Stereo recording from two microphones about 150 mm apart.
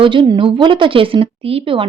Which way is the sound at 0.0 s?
35° right (ahead or behind).